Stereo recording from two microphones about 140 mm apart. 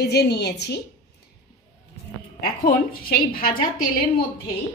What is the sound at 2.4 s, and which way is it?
A woman's voice, 90° left.